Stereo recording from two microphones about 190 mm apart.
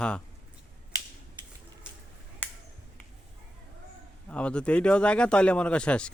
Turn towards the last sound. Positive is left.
turn(degrees=5)  # may be behind; listen again after turning